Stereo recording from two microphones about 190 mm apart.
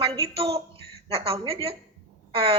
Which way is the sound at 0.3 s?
30° right (ahead or behind).